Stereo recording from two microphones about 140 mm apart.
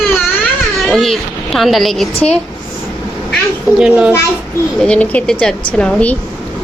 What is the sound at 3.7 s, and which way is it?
Speech, 5° right (ahead or behind).